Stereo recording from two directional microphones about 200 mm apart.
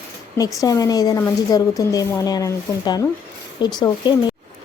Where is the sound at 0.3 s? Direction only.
15° left (ahead or behind).